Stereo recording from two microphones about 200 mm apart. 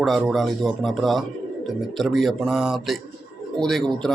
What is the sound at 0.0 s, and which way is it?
A man's voice, centre (ahead or behind).